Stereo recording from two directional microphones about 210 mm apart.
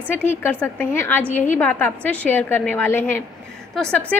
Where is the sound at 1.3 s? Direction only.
35° left (ahead or behind).